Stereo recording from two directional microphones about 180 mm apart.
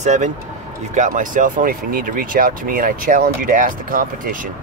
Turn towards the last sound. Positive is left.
turn(degrees=-50)  # may be behind; listen again after turning